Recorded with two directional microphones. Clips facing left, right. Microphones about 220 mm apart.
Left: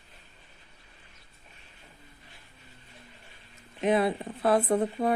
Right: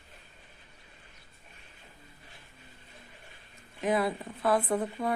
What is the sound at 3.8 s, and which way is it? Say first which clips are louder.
Speech: left 4 dB; 25° left (ahead or behind).